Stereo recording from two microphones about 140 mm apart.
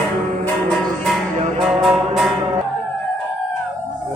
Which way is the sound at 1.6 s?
Centre (ahead or behind).